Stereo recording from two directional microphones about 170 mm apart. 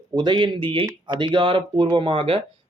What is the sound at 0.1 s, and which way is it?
Speech, 25° right (ahead or behind).